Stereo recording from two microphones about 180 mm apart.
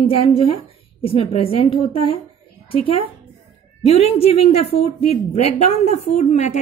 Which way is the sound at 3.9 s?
35° left (ahead or behind).